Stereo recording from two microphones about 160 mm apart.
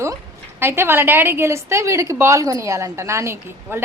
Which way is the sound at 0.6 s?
15° right (ahead or behind).